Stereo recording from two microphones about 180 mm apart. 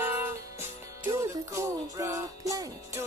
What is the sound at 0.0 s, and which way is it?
Music, 15° right (ahead or behind).